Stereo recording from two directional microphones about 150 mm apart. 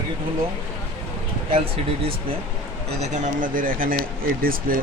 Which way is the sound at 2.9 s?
50° right (ahead or behind).